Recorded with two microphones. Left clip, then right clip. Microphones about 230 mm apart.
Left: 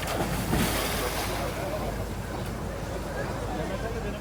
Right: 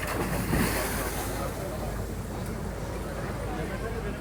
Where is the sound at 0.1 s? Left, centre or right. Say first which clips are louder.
Left 2 dB; left.